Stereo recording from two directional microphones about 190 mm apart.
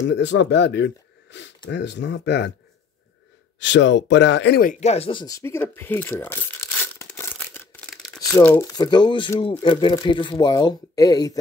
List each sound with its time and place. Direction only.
0.1 s speech: 65° left (ahead or behind)
3.5 s speech: 70° left (ahead or behind); by 4.7 s 55° left (ahead or behind)
4.7 s speech: 35° left (ahead or behind)
5.2 s speech: 15° left (ahead or behind)